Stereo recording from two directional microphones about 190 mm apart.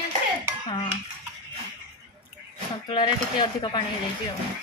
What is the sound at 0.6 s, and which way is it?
Speech, 25° left (ahead or behind).